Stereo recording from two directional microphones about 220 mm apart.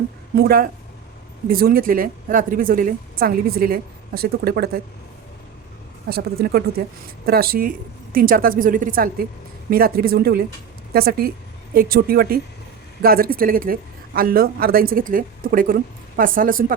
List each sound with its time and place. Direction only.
0.3 s a woman's voice: 45° right (ahead or behind)
6.1 s a woman's voice: 45° right (ahead or behind)